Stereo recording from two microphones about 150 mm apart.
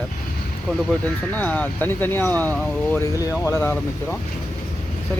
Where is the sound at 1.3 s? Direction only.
10° left (ahead or behind).